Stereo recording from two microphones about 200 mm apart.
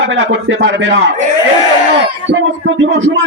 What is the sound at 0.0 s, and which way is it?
Speech, 65° right (ahead or behind).